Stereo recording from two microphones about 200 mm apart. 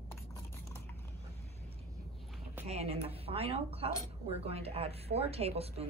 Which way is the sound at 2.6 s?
30° right (ahead or behind).